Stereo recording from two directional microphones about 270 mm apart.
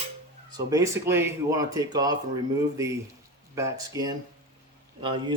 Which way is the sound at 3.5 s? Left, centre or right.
Centre.